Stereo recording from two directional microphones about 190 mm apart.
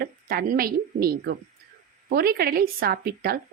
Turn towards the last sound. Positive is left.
turn(degrees=-50)  # may be behind; listen again after turning